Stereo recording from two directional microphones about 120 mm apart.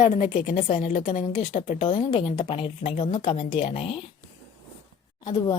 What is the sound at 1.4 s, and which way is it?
Speech, 50° left (ahead or behind).